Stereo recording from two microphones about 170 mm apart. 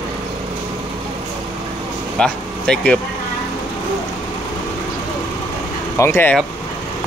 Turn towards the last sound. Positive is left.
turn(degrees=15)  # may be behind; listen again after turning